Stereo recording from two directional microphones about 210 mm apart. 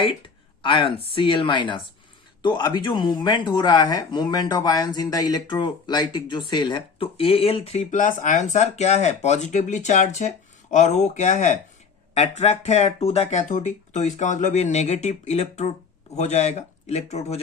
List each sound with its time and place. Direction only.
0.6 s speech: 25° left (ahead or behind)